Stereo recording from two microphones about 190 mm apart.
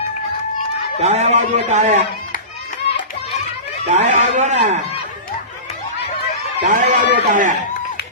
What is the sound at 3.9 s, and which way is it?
Speech, 40° right (ahead or behind).